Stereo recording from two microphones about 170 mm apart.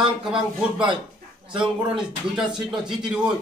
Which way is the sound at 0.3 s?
5° right (ahead or behind).